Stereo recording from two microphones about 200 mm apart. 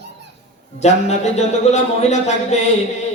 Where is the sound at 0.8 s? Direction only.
35° left (ahead or behind).